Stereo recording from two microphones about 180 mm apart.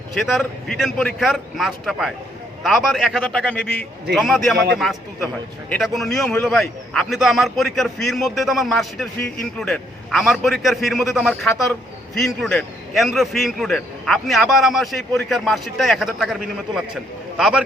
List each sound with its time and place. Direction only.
0.1 s a man's voice: centre (ahead or behind)
4.5 s a man's voice: 65° right (ahead or behind)
5.6 s a man's voice: 5° left (ahead or behind)